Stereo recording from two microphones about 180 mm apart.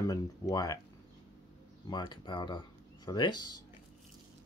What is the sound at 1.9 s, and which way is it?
Speech, 25° left (ahead or behind).